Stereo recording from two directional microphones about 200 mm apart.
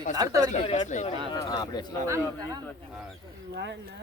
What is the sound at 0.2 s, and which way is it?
Speech, 20° right (ahead or behind).